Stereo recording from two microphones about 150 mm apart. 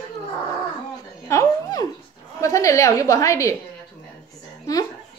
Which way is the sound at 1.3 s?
20° left (ahead or behind).